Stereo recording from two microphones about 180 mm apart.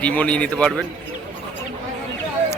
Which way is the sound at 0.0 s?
5° left (ahead or behind).